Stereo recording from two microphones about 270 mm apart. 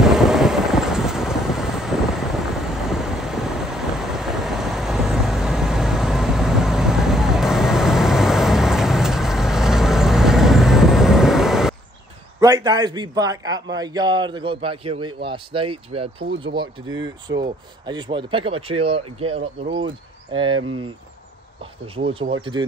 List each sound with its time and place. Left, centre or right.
0.0 s vehicle: centre
12.4 s a man's voice: centre
17.4 s speech: centre
20.5 s speech: right
21.9 s speech: right